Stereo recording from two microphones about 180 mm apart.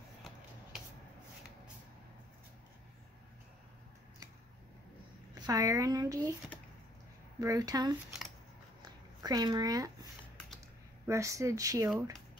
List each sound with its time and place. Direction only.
5.5 s speech: 20° right (ahead or behind)
7.3 s speech: 20° right (ahead or behind)
8.8 s a sound: 20° right (ahead or behind)
11.1 s speech: 15° right (ahead or behind)